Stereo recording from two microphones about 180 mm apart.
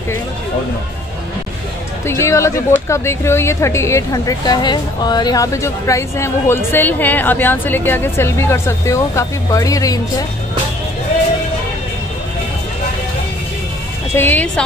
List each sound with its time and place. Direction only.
2.0 s a woman's voice: 15° left (ahead or behind)
14.1 s a woman's voice: 10° left (ahead or behind)